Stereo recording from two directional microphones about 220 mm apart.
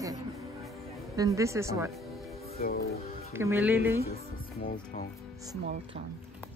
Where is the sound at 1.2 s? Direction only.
15° right (ahead or behind).